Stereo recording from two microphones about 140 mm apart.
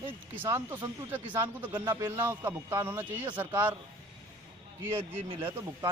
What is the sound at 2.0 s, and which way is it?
Speech, 15° right (ahead or behind).